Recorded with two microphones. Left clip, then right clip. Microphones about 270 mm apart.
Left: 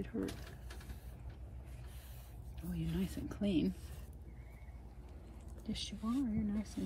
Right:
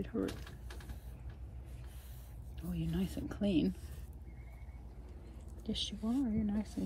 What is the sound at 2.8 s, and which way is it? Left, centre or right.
Speech, centre.